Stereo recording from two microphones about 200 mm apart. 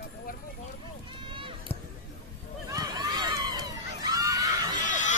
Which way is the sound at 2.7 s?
20° right (ahead or behind).